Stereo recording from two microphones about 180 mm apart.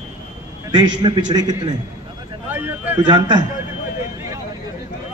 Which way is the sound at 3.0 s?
25° right (ahead or behind).